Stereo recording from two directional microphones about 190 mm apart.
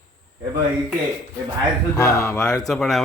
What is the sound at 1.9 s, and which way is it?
Speech, 15° left (ahead or behind).